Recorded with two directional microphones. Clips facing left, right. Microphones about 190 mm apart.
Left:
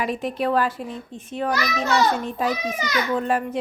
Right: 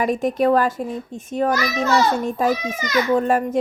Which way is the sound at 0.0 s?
45° right (ahead or behind).